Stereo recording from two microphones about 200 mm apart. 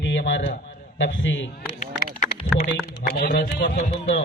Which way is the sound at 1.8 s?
40° left (ahead or behind).